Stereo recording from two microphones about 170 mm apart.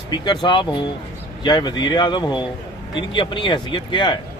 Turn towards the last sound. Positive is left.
turn(degrees=30)  # may be behind; listen again after turning